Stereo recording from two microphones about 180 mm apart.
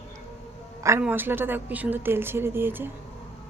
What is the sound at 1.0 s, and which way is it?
A woman's voice, 10° right (ahead or behind).